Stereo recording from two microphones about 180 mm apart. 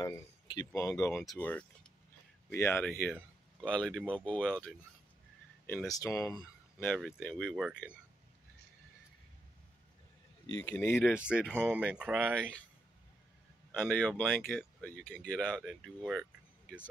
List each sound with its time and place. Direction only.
0.0 s speech: 20° left (ahead or behind)
1.2 s speech: 5° left (ahead or behind)
5.9 s speech: 20° left (ahead or behind)
6.9 s speech: 5° left (ahead or behind)
10.6 s speech: 15° left (ahead or behind)
11.6 s speech: 5° right (ahead or behind)
12.4 s speech: 5° left (ahead or behind)
13.7 s speech: 10° left (ahead or behind)